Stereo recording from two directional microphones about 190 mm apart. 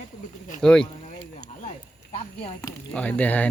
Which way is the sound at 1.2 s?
30° left (ahead or behind).